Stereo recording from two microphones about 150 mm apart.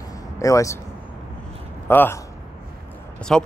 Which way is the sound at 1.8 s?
15° left (ahead or behind).